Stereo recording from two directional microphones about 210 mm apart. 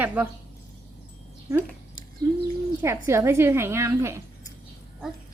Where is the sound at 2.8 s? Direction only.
15° right (ahead or behind).